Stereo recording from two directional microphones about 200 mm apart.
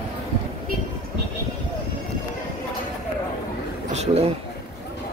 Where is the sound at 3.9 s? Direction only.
35° right (ahead or behind).